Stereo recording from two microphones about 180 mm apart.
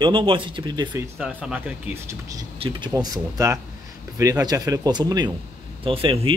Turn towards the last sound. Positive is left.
turn(degrees=-30)  # may be behind; listen again after turning